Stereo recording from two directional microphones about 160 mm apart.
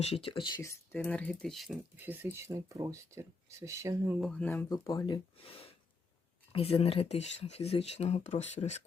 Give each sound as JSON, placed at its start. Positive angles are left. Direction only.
{"t": 0.0, "sound": "speech", "side_deg": 40}
{"t": 0.6, "sound": "speech", "side_deg": 15}
{"t": 2.0, "sound": "speech", "side_deg": -10}
{"t": 4.2, "sound": "speech", "side_deg": 5}
{"t": 4.7, "sound": "speech", "side_deg": 20}